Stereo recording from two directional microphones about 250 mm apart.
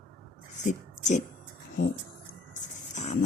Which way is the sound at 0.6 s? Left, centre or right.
Left.